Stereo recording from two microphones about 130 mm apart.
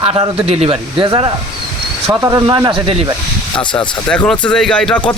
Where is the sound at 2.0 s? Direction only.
20° right (ahead or behind).